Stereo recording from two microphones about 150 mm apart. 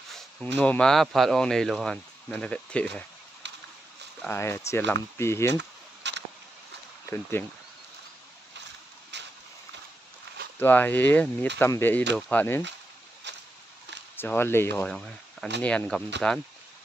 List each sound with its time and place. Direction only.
0.1 s speech: 10° left (ahead or behind)
4.3 s speech: 15° left (ahead or behind)
7.1 s speech: 15° left (ahead or behind)
10.6 s speech: 15° left (ahead or behind)
14.1 s speech: 15° left (ahead or behind)
14.9 s speech: 5° left (ahead or behind)